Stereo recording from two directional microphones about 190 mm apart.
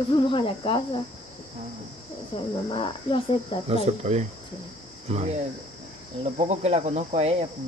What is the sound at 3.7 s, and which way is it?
Cricket, 35° right (ahead or behind).